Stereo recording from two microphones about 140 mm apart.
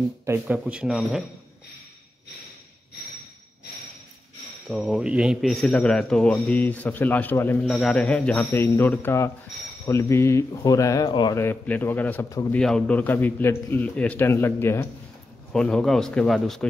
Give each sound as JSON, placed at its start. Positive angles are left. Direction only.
{"t": 0.2, "sound": "speech", "side_deg": -15}
{"t": 4.6, "sound": "a man's voice", "side_deg": 0}
{"t": 11.3, "sound": "a man's voice", "side_deg": 15}
{"t": 15.5, "sound": "a man's voice", "side_deg": 5}